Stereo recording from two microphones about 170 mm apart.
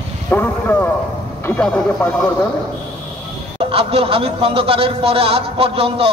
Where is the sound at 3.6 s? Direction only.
35° right (ahead or behind).